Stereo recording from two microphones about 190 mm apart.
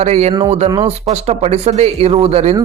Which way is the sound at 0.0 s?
35° right (ahead or behind).